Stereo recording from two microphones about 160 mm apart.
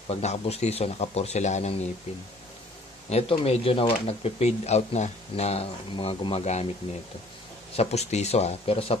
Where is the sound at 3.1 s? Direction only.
40° left (ahead or behind).